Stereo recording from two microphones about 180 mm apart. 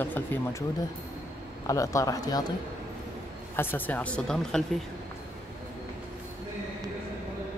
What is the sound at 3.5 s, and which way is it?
Speech, 10° left (ahead or behind).